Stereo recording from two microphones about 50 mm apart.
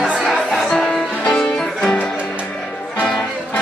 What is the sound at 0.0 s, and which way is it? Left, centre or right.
Music, centre.